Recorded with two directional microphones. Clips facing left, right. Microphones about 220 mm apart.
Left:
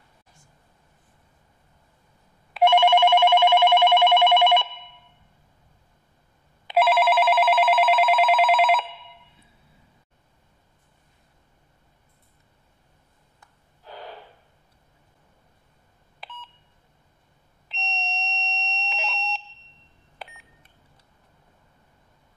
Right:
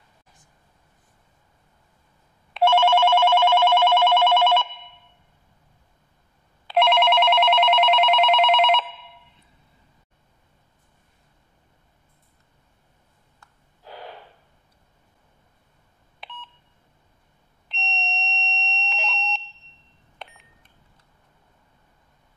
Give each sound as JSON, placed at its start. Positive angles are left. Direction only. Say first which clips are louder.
{"t": 2.6, "sound": "telephone bell ringing", "louder": "left 1 dB", "side_deg": 15}
{"t": 6.7, "sound": "telephone bell ringing", "louder": "even", "side_deg": 5}
{"t": 16.2, "sound": "beep", "louder": "right 1 dB", "side_deg": 0}
{"t": 17.6, "sound": "doorbell", "louder": "even", "side_deg": 5}
{"t": 20.2, "sound": "beep", "louder": "left 1 dB", "side_deg": 5}